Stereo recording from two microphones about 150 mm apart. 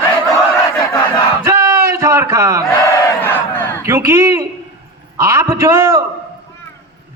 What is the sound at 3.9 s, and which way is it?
Speech, 15° right (ahead or behind).